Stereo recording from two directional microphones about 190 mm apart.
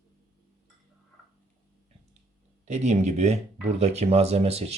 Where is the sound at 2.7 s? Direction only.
35° right (ahead or behind).